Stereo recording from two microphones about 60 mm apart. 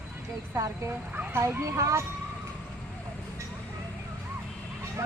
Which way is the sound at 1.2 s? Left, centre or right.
Right.